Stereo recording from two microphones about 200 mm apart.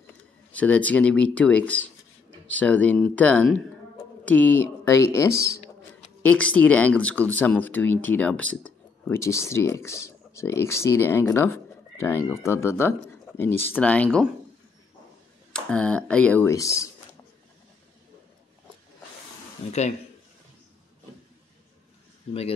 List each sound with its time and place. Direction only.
0.5 s speech: 5° left (ahead or behind)
5.3 s speech: 55° right (ahead or behind)
6.2 s speech: 5° left (ahead or behind)
15.5 s speech: 5° left (ahead or behind)